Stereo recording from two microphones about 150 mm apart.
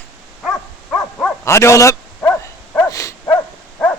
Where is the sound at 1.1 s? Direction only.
20° left (ahead or behind).